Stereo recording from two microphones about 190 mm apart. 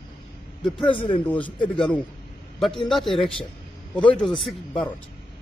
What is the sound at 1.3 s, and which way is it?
A man's voice, 10° left (ahead or behind).